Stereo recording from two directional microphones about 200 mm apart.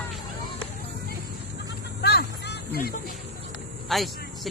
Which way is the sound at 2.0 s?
55° left (ahead or behind).